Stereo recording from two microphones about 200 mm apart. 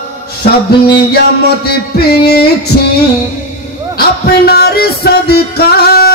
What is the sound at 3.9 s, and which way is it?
Music, 50° left (ahead or behind).